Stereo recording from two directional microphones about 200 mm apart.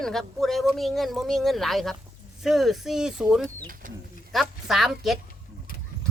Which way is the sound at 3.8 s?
40° right (ahead or behind).